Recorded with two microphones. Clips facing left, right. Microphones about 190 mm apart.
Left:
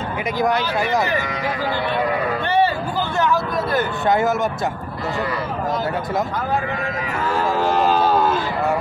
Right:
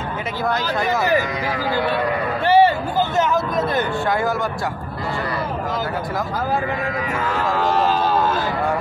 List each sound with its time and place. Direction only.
0.4 s speech: 15° left (ahead or behind)
2.4 s speech: 30° right (ahead or behind)
3.2 s speech: 20° right (ahead or behind)